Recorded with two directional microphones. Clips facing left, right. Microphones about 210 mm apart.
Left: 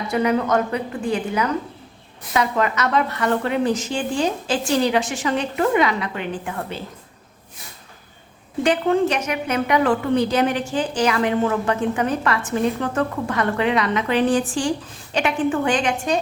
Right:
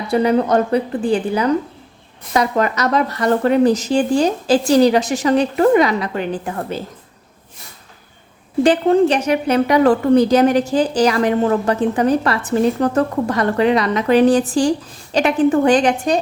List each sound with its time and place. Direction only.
0.1 s a woman's voice: 35° right (ahead or behind)
8.6 s a woman's voice: 35° right (ahead or behind)